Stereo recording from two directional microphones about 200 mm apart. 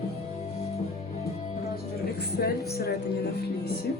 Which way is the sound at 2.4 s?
55° left (ahead or behind).